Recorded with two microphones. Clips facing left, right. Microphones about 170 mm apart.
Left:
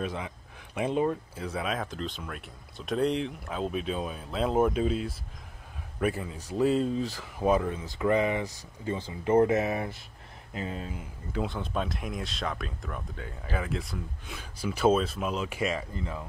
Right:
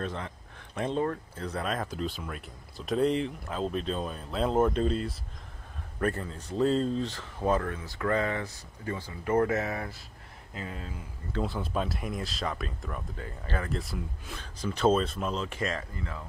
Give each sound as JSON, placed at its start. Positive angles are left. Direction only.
{"t": 0.0, "sound": "speech", "side_deg": 10}
{"t": 11.4, "sound": "speech", "side_deg": -5}
{"t": 14.4, "sound": "speech", "side_deg": 10}